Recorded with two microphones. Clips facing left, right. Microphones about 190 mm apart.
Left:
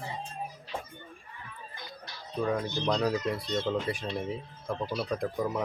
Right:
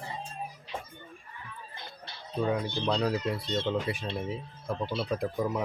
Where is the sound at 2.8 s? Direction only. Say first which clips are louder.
Left 1 dB; centre (ahead or behind).